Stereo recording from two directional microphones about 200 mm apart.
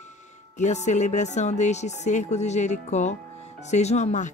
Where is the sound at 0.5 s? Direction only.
35° left (ahead or behind).